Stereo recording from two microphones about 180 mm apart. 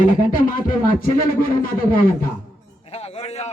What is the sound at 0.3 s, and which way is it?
Speech, 50° left (ahead or behind).